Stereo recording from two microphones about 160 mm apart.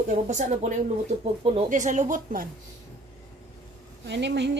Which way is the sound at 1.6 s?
50° right (ahead or behind).